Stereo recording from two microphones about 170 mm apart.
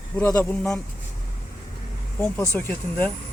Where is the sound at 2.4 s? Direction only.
15° left (ahead or behind).